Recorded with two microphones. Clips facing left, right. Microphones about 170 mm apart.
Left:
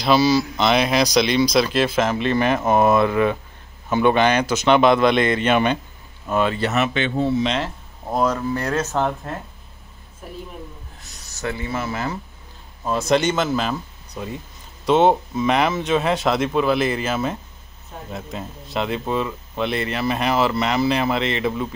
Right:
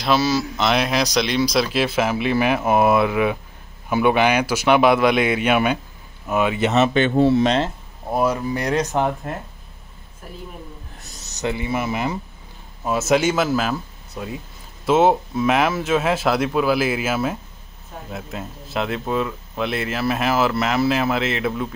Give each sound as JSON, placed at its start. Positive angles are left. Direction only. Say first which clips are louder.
{"t": 0.0, "sound": "speech", "louder": "left 3 dB", "side_deg": 0}
{"t": 7.2, "sound": "speech", "louder": "right 5 dB", "side_deg": -70}
{"t": 7.4, "sound": "speech", "louder": "right 4 dB", "side_deg": -30}
{"t": 8.1, "sound": "speech", "louder": "even", "side_deg": -10}
{"t": 11.2, "sound": "speech", "louder": "right 3 dB", "side_deg": -20}